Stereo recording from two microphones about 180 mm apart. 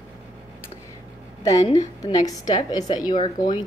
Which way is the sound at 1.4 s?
20° left (ahead or behind).